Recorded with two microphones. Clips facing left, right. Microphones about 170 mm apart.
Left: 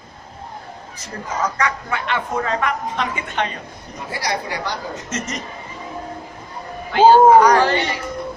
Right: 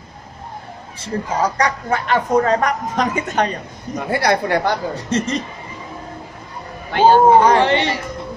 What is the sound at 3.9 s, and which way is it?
Speech, 60° right (ahead or behind).